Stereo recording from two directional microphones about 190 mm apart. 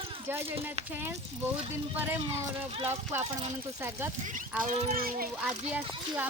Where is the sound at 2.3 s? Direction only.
30° right (ahead or behind).